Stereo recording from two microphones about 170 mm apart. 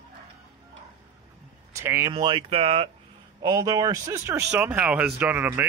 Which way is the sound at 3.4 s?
20° right (ahead or behind).